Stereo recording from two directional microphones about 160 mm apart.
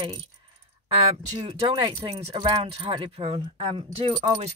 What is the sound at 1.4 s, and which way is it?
Speech, 30° right (ahead or behind).